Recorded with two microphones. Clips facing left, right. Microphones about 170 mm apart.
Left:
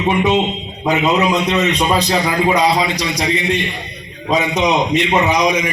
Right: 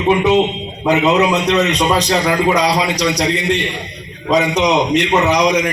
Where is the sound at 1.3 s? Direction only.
70° right (ahead or behind).